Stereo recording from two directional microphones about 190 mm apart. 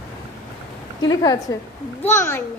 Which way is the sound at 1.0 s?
20° left (ahead or behind).